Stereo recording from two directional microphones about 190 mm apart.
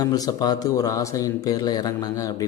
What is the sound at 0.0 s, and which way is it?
Speech, 20° left (ahead or behind).